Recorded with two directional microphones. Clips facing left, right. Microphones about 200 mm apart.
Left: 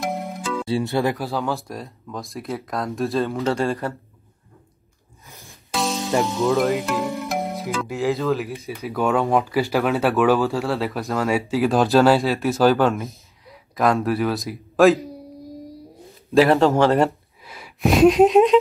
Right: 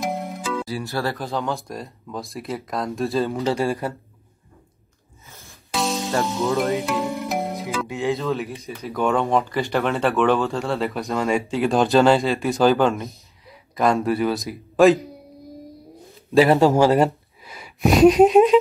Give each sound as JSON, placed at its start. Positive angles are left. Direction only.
{"t": 0.0, "sound": "music", "side_deg": 0}
{"t": 0.9, "sound": "speech", "side_deg": 15}
{"t": 1.2, "sound": "speech", "side_deg": 5}
{"t": 3.5, "sound": "speech", "side_deg": -15}
{"t": 5.3, "sound": "music", "side_deg": 15}
{"t": 5.7, "sound": "music", "side_deg": 0}
{"t": 6.2, "sound": "speech", "side_deg": 0}
{"t": 16.3, "sound": "speech", "side_deg": 0}
{"t": 17.5, "sound": "a sound", "side_deg": 0}